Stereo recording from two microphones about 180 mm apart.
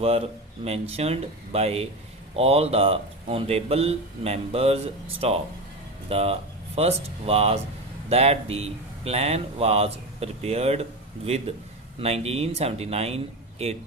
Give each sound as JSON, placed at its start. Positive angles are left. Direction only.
{"t": 0.0, "sound": "speech", "side_deg": -35}
{"t": 11.9, "sound": "speech", "side_deg": -35}